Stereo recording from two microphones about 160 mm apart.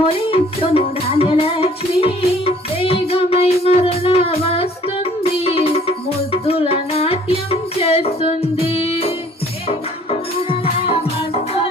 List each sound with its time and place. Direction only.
0.3 s music: 35° left (ahead or behind)